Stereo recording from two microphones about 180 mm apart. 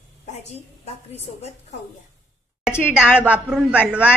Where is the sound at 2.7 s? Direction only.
15° left (ahead or behind).